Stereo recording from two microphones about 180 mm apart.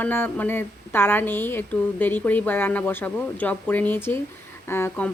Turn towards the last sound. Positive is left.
turn(degrees=15)  # may be behind; listen again after turning